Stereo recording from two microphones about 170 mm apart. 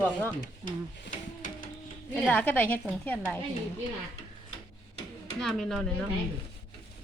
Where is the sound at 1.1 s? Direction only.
50° left (ahead or behind).